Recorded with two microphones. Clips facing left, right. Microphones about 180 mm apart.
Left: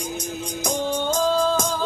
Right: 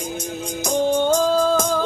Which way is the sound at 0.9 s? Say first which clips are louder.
Right 3 dB; 50° right (ahead or behind).